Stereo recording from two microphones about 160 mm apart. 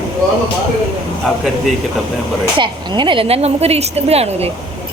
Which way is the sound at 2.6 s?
30° right (ahead or behind).